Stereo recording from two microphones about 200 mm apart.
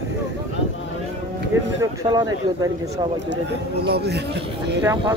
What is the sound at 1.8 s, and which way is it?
Speech, 20° right (ahead or behind).